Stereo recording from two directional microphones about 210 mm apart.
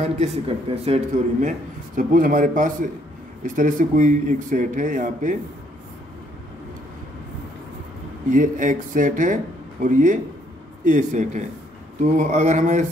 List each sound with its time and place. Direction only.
0.0 s speech: 30° right (ahead or behind)
2.0 s speech: 40° right (ahead or behind)
8.3 s speech: 40° right (ahead or behind)